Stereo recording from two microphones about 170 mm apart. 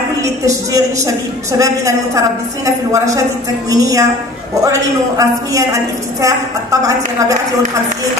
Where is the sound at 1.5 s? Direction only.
20° right (ahead or behind).